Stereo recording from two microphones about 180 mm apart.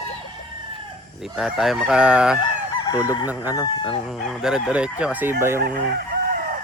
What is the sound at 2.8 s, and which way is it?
Chicken, 20° left (ahead or behind).